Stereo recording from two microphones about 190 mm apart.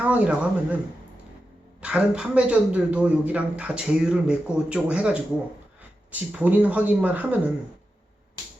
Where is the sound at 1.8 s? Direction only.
5° right (ahead or behind).